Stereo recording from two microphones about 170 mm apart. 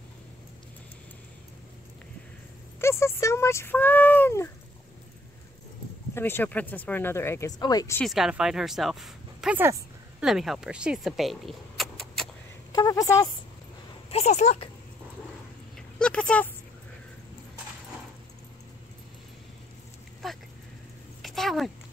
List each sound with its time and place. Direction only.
2.8 s a sound: 15° left (ahead or behind)
6.1 s speech: 15° left (ahead or behind)
8.0 s speech: centre (ahead or behind)
12.7 s a woman's voice: 20° left (ahead or behind)
14.1 s speech: 40° left (ahead or behind)
16.0 s speech: 5° left (ahead or behind)
20.2 s a sound: centre (ahead or behind)